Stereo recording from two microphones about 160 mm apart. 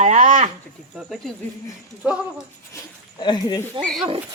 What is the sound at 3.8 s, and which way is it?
Speech, 5° left (ahead or behind).